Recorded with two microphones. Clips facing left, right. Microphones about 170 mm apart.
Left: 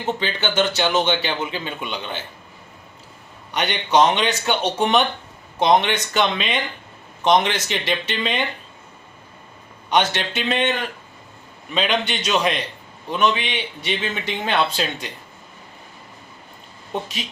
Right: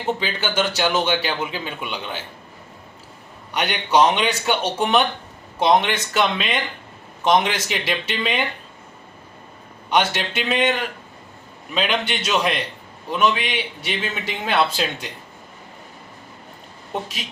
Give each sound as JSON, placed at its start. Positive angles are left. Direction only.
{"t": 0.2, "sound": "a man's voice", "side_deg": -10}
{"t": 3.5, "sound": "a man's voice", "side_deg": -5}
{"t": 9.9, "sound": "a man's voice", "side_deg": -5}
{"t": 16.9, "sound": "a man's voice", "side_deg": -5}